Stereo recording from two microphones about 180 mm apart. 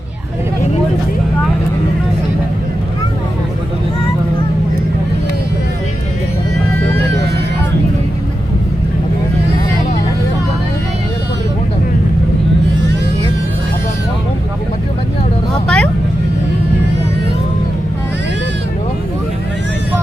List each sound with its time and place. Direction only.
15.6 s vehicle: 5° left (ahead or behind)